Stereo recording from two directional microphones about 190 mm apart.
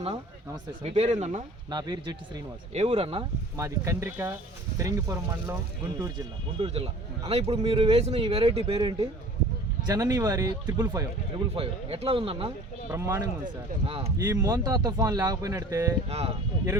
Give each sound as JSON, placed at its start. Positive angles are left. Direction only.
{"t": 0.0, "sound": "speech", "side_deg": -30}
{"t": 1.7, "sound": "speech", "side_deg": -20}
{"t": 2.7, "sound": "speech", "side_deg": -35}
{"t": 3.6, "sound": "speech", "side_deg": -15}
{"t": 6.6, "sound": "speech", "side_deg": -30}
{"t": 11.5, "sound": "speech", "side_deg": -30}
{"t": 12.9, "sound": "speech", "side_deg": -15}
{"t": 13.8, "sound": "speech", "side_deg": -30}
{"t": 14.3, "sound": "speech", "side_deg": -20}
{"t": 16.0, "sound": "speech", "side_deg": -30}